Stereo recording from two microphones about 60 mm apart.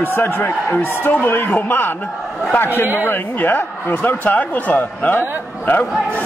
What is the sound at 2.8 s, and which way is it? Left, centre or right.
Speech, right.